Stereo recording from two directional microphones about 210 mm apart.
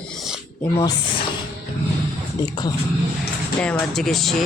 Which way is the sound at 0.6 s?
20° left (ahead or behind).